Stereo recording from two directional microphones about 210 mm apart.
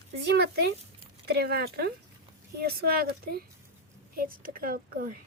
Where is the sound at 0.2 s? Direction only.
50° right (ahead or behind).